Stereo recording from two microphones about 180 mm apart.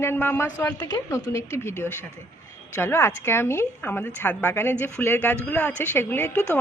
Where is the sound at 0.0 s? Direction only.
10° left (ahead or behind).